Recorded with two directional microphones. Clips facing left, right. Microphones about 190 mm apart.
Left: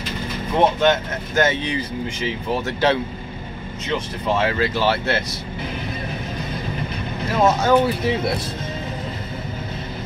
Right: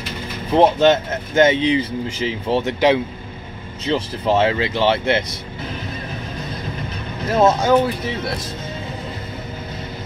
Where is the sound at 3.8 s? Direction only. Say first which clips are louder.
Right 4 dB; 30° right (ahead or behind).